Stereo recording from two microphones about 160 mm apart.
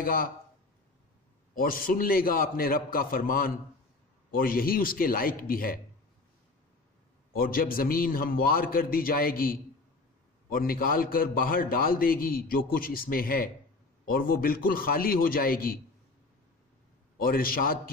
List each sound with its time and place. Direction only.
0.0 s a man's voice: 65° left (ahead or behind)
1.5 s a man's voice: 65° left (ahead or behind)
7.3 s a man's voice: 65° left (ahead or behind)
17.2 s a man's voice: 65° left (ahead or behind)